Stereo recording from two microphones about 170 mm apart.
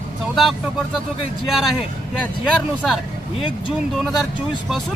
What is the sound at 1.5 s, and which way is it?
Speech, centre (ahead or behind).